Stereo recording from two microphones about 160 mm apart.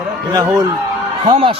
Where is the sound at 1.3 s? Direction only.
35° right (ahead or behind).